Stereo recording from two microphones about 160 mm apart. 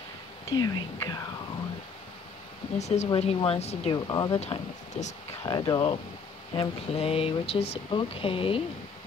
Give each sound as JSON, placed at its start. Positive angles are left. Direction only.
{"t": 0.6, "sound": "speech", "side_deg": 25}
{"t": 2.8, "sound": "speech", "side_deg": 45}
{"t": 3.9, "sound": "speech", "side_deg": 25}
{"t": 5.0, "sound": "speech", "side_deg": 45}
{"t": 5.4, "sound": "speech", "side_deg": 25}